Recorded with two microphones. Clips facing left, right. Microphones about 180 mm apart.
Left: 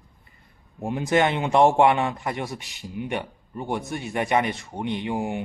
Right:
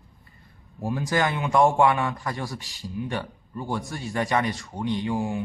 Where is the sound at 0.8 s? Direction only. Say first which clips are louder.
Left 3 dB; 25° left (ahead or behind).